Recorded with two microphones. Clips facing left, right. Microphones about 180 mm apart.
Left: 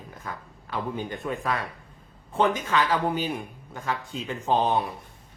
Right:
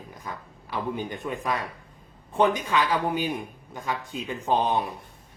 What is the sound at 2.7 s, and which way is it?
Speech, 15° right (ahead or behind).